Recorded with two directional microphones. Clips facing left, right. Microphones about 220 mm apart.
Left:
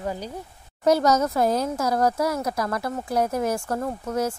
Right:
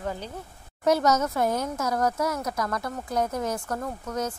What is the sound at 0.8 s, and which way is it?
A woman's voice, 35° left (ahead or behind).